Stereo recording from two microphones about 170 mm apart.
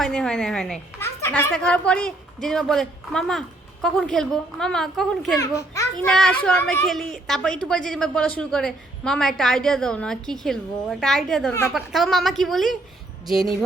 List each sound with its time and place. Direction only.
0.0 s a woman's voice: 5° left (ahead or behind)
5.4 s a child's voice: 20° left (ahead or behind)
6.1 s a woman's voice: 5° left (ahead or behind)